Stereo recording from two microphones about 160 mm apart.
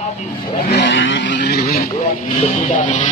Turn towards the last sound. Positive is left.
turn(degrees=50)  # may be behind; listen again after turning